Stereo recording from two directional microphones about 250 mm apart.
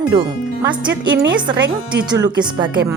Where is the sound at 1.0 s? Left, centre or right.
Right.